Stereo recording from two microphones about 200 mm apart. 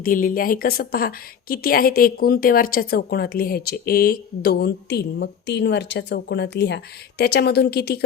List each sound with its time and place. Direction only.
0.0 s a woman's voice: 45° left (ahead or behind)